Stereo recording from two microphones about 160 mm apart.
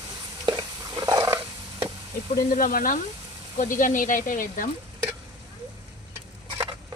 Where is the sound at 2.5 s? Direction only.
60° left (ahead or behind).